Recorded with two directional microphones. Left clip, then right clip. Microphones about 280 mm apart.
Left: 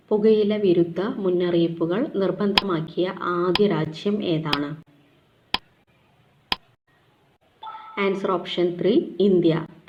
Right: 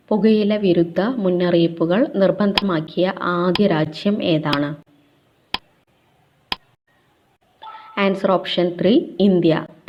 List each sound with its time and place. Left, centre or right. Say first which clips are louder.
0.1 s a woman's voice: right 1 dB; right
5.5 s a sound: even; centre
7.9 s a woman's voice: right 6 dB; right